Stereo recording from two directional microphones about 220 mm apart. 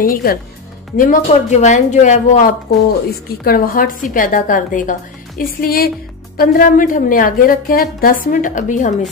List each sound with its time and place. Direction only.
0.0 s a woman's voice: 40° left (ahead or behind)